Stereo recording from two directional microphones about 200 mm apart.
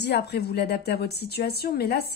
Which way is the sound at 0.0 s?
55° left (ahead or behind).